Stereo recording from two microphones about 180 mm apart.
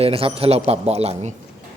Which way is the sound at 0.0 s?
30° right (ahead or behind).